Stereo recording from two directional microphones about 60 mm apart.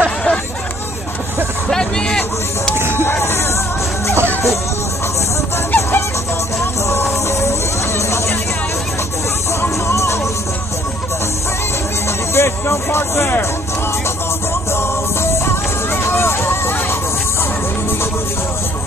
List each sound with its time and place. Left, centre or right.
0.0 s chatter: centre
1.7 s a sound: centre
3.1 s music: left
5.8 s music: left
9.6 s music: left
12.4 s music: left
15.4 s music: left